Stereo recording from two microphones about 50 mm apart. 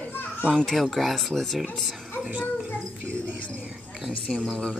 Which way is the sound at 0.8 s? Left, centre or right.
Centre.